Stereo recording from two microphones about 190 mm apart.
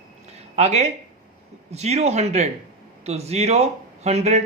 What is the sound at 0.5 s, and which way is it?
A man's voice, 35° right (ahead or behind).